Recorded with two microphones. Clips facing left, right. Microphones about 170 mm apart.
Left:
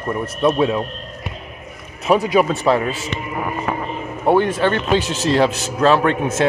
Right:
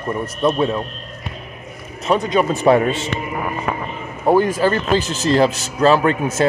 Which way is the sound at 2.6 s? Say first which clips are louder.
Right 3 dB; 20° right (ahead or behind).